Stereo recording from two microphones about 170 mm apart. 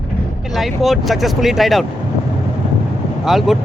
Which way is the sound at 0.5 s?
Centre (ahead or behind).